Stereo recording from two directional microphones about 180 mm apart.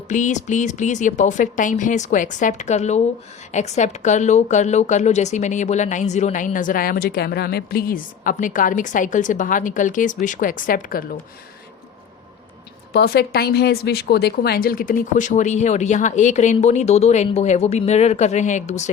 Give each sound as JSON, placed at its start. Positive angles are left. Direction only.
{"t": 0.1, "sound": "a woman's voice", "side_deg": 45}
{"t": 12.9, "sound": "a woman's voice", "side_deg": 60}